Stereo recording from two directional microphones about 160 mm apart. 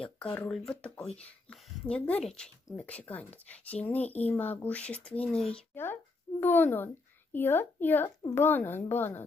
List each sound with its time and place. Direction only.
0.0 s speech: 5° left (ahead or behind)